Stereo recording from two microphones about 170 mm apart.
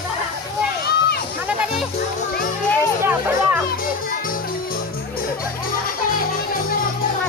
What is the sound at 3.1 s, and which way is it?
Children playing, 10° right (ahead or behind).